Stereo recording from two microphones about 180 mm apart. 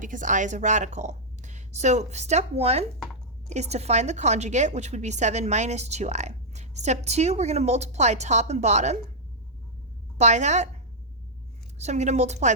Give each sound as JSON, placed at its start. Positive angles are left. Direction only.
{"t": 0.0, "sound": "a woman's voice", "side_deg": -45}
{"t": 10.2, "sound": "a woman's voice", "side_deg": -40}
{"t": 11.8, "sound": "a woman's voice", "side_deg": -40}